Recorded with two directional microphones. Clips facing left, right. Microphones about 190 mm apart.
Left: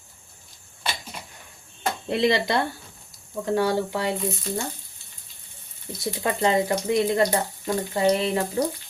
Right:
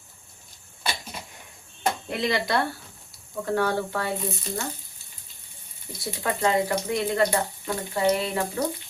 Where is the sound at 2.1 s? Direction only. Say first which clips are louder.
Left 6 dB; 25° left (ahead or behind).